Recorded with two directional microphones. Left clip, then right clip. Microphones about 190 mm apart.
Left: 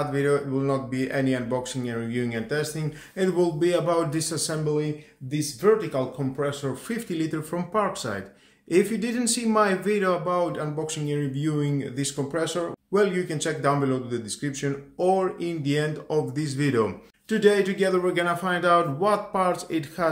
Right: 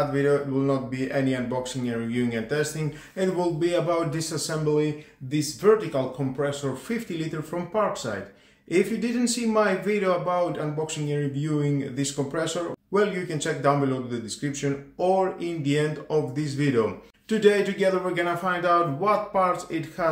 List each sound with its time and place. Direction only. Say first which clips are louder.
0.1 s a man's voice: right 1 dB; 40° left (ahead or behind)